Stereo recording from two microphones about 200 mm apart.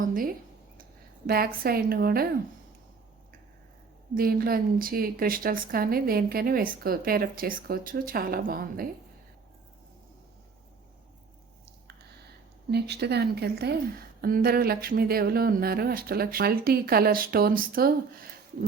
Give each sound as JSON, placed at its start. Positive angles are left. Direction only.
{"t": 0.0, "sound": "a woman's voice", "side_deg": -45}
{"t": 4.1, "sound": "a woman's voice", "side_deg": -50}
{"t": 12.7, "sound": "a woman's voice", "side_deg": -55}